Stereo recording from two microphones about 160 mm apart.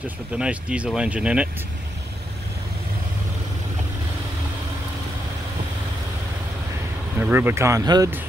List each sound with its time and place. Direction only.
0.0 s speech: 5° right (ahead or behind)
7.2 s speech: 10° right (ahead or behind)